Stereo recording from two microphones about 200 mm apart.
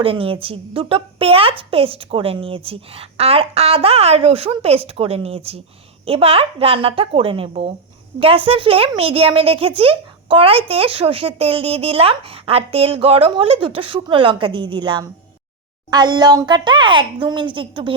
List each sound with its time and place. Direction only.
0.0 s a child's voice: 25° right (ahead or behind)